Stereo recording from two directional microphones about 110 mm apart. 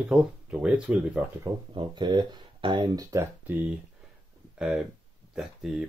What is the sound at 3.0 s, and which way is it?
Speech, 30° right (ahead or behind).